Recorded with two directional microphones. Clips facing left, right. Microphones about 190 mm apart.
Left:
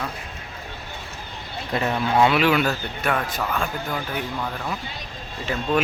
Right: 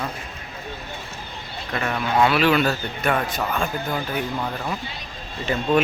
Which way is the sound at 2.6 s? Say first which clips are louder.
Right 2 dB; centre (ahead or behind).